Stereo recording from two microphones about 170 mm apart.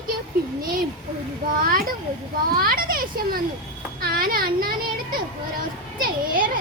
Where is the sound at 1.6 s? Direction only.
60° right (ahead or behind).